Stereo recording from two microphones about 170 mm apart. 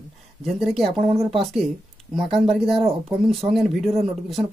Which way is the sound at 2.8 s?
35° right (ahead or behind).